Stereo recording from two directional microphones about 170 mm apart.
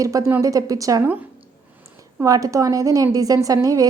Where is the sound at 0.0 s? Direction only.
20° right (ahead or behind).